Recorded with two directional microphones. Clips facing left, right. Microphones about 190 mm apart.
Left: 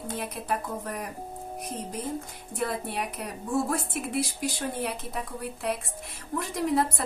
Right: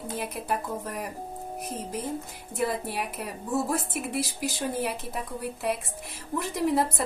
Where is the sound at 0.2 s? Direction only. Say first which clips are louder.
Right 2 dB; centre (ahead or behind).